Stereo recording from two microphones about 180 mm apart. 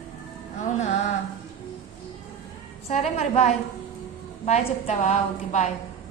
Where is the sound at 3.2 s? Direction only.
40° left (ahead or behind).